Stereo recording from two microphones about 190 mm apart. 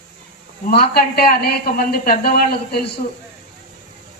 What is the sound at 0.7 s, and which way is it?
A man's voice, 55° left (ahead or behind).